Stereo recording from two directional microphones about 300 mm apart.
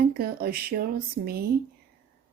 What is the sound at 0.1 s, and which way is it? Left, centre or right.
Speech, right.